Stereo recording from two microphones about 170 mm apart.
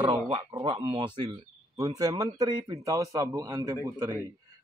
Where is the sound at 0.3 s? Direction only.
25° right (ahead or behind).